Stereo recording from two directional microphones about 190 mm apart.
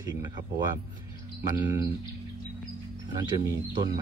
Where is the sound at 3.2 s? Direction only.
20° right (ahead or behind).